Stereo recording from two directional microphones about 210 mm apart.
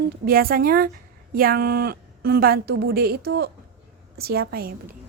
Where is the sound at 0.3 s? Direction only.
45° right (ahead or behind).